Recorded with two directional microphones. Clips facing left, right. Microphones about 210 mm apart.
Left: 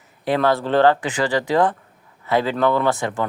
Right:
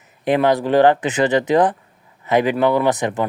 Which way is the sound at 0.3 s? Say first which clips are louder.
Right 3 dB; 15° right (ahead or behind).